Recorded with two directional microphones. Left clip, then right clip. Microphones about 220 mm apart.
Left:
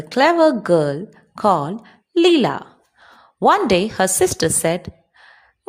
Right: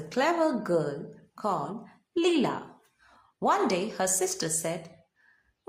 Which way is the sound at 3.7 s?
35° left (ahead or behind).